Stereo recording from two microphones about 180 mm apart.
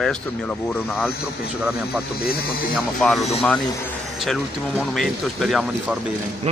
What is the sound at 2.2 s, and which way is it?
Speech, 55° left (ahead or behind).